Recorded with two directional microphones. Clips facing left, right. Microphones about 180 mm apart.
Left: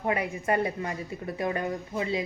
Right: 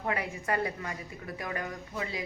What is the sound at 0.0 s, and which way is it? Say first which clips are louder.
Speech: left 5 dB; 20° left (ahead or behind).